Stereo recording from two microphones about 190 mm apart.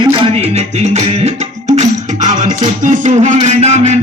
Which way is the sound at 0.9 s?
35° right (ahead or behind).